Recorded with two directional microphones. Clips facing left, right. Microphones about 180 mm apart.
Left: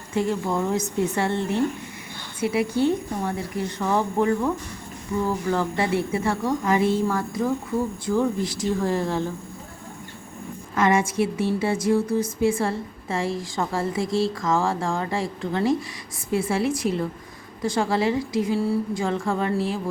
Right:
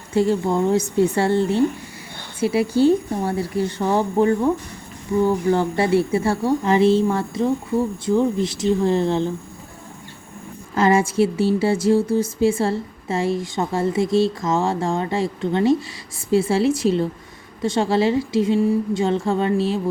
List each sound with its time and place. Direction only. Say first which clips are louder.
0.1 s a woman's voice: right 5 dB; 30° right (ahead or behind)
10.8 s a woman's voice: right 4 dB; 30° right (ahead or behind)